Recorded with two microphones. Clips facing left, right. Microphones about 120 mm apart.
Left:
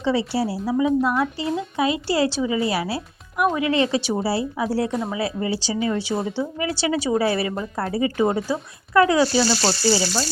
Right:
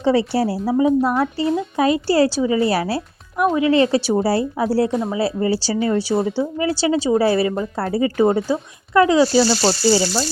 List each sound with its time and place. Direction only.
0.0 s a woman's voice: 50° right (ahead or behind)
4.9 s speech: centre (ahead or behind)
5.1 s a woman's voice: 35° right (ahead or behind)
9.4 s speech: 10° right (ahead or behind)